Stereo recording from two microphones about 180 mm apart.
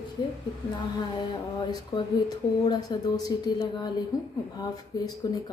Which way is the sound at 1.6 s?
25° left (ahead or behind).